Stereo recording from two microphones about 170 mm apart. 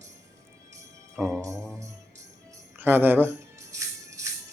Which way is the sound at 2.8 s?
10° right (ahead or behind).